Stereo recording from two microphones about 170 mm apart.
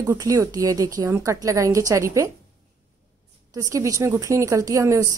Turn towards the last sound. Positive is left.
turn(degrees=-15)  # may be behind; listen again after turning